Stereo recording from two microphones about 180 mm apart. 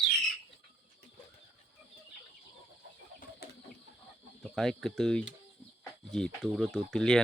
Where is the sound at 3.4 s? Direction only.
60° left (ahead or behind).